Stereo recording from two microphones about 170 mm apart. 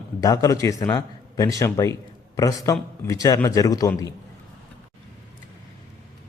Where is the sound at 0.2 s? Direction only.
20° left (ahead or behind).